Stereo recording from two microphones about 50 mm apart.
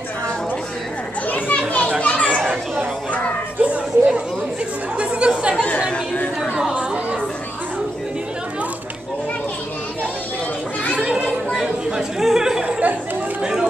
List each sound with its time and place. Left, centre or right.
1.2 s children playing: left
3.6 s a sound: right
4.9 s chatter: right
5.6 s chatter: left
6.5 s chatter: centre
11.0 s children playing: centre
11.5 s chatter: centre
12.6 s chatter: right
13.4 s music: centre